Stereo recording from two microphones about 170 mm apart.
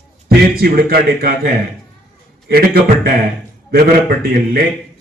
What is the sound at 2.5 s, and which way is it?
A man's voice, 65° right (ahead or behind).